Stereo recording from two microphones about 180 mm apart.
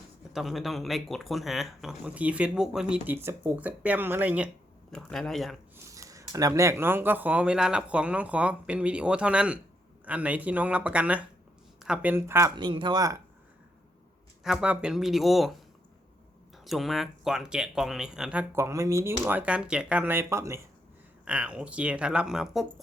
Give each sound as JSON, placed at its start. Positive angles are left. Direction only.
{"t": 0.3, "sound": "speech", "side_deg": 0}
{"t": 4.9, "sound": "speech", "side_deg": 0}
{"t": 5.7, "sound": "speech", "side_deg": -15}
{"t": 12.5, "sound": "speech", "side_deg": -25}
{"t": 14.4, "sound": "speech", "side_deg": -5}
{"t": 16.6, "sound": "speech", "side_deg": 0}